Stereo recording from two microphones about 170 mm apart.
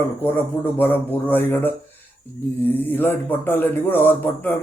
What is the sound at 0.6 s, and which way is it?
Speech, 10° left (ahead or behind).